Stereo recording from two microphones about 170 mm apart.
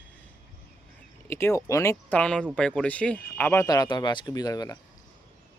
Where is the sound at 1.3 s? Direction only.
15° left (ahead or behind).